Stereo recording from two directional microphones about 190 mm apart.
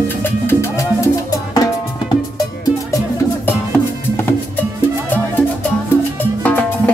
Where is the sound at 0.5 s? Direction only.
15° left (ahead or behind).